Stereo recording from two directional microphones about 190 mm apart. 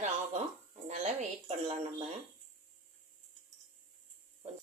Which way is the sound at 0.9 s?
35° right (ahead or behind).